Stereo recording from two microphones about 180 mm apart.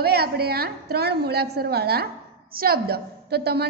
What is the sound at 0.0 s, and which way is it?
A woman's voice, 60° right (ahead or behind).